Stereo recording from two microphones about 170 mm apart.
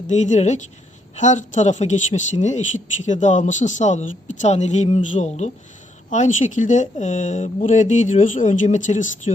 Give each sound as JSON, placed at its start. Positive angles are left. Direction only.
{"t": 0.1, "sound": "speech", "side_deg": 45}